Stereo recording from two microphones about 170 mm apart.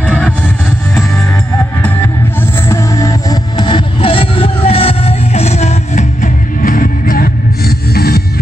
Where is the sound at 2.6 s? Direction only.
20° left (ahead or behind); by 8.2 s 65° left (ahead or behind).